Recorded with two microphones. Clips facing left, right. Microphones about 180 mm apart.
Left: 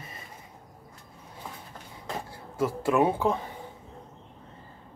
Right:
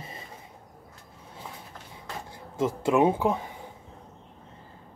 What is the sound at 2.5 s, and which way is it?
Speech, 20° right (ahead or behind).